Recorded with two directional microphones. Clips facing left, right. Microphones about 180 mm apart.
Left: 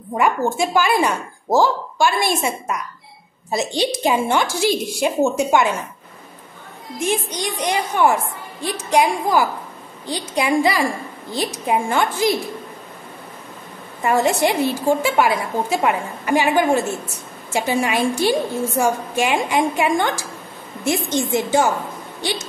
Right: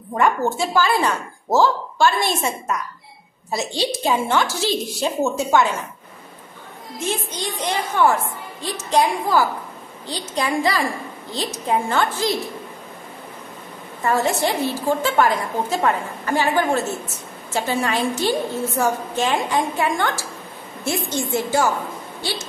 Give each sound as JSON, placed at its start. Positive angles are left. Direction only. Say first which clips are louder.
{"t": 0.1, "sound": "a woman's voice", "louder": "even", "side_deg": 10}
{"t": 7.0, "sound": "a woman's voice", "louder": "left 4 dB", "side_deg": 15}
{"t": 14.0, "sound": "a woman's voice", "louder": "left 3 dB", "side_deg": 15}